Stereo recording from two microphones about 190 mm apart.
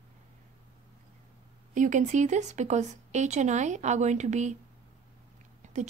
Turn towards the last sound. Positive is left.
turn(degrees=-40)  # may be behind; listen again after turning